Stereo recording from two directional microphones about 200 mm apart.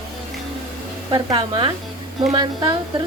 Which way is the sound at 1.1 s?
25° right (ahead or behind).